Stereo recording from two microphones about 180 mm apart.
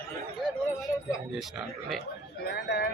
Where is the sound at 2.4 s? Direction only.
65° left (ahead or behind).